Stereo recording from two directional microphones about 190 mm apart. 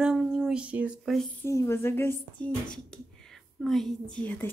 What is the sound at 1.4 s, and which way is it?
Speech, 15° left (ahead or behind).